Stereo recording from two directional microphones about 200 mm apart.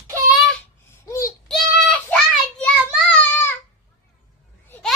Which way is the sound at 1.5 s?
5° left (ahead or behind).